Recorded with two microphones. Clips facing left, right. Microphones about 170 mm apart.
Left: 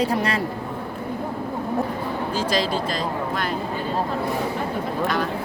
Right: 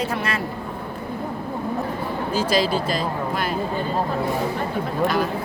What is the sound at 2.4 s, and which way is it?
Speech, 10° right (ahead or behind).